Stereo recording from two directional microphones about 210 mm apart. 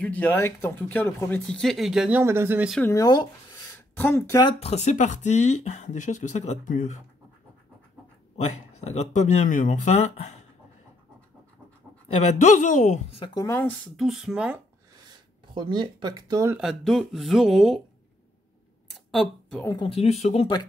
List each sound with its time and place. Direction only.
0.0 s speech: 10° left (ahead or behind)
2.8 s speech: 15° left (ahead or behind); by 7.0 s 35° left (ahead or behind)
8.5 s speech: 30° left (ahead or behind)
12.1 s speech: 35° left (ahead or behind); by 13.7 s 10° left (ahead or behind)
13.9 s speech: centre (ahead or behind)
15.0 s speech: 20° right (ahead or behind)
16.5 s speech: centre (ahead or behind)
18.9 s a sound: centre (ahead or behind)
19.6 s speech: 20° left (ahead or behind)